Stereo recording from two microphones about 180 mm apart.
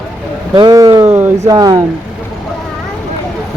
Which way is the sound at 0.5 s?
25° right (ahead or behind).